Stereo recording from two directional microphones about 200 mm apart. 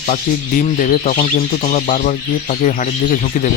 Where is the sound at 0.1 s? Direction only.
40° left (ahead or behind).